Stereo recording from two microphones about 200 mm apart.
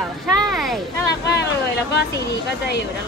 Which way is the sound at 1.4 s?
55° left (ahead or behind).